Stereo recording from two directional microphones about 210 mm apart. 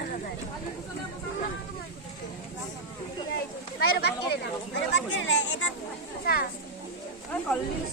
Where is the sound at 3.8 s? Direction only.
50° left (ahead or behind).